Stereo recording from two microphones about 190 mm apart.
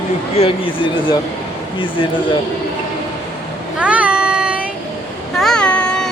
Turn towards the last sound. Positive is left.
turn(degrees=5)  # may be behind; listen again after turning